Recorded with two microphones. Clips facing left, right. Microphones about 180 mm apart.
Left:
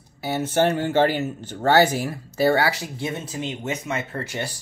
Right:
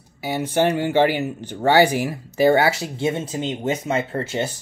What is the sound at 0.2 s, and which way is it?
Speech, 15° right (ahead or behind).